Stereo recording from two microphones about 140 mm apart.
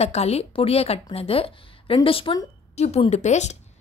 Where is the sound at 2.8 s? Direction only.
50° left (ahead or behind).